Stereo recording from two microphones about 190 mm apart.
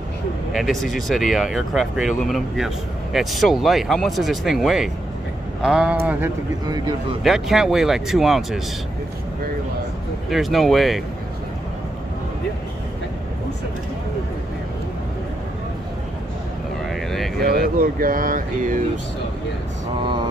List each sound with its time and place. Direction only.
0.5 s speech: centre (ahead or behind)
6.6 s speech: 25° right (ahead or behind)
7.2 s speech: centre (ahead or behind)
10.3 s speech: centre (ahead or behind)
17.7 s speech: 50° right (ahead or behind)